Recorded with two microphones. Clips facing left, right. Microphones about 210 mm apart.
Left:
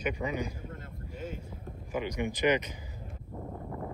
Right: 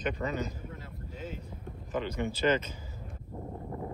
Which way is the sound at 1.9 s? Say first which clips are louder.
Even; 15° left (ahead or behind).